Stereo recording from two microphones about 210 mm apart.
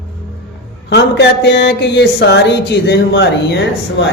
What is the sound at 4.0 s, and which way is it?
Speech, 60° left (ahead or behind).